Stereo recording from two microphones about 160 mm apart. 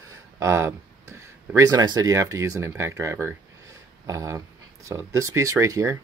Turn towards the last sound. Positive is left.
turn(degrees=-20)  # may be behind; listen again after turning